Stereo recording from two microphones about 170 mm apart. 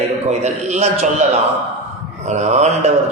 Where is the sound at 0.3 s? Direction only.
40° right (ahead or behind).